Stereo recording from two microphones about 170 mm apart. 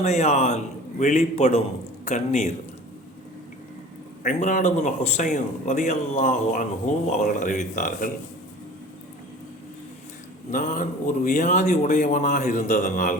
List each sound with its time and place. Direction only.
0.0 s a man's voice: 40° left (ahead or behind)
4.2 s a man's voice: 50° left (ahead or behind)
10.5 s a man's voice: 50° left (ahead or behind)